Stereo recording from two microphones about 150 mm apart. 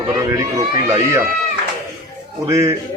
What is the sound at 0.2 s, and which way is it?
A man's voice, 20° right (ahead or behind).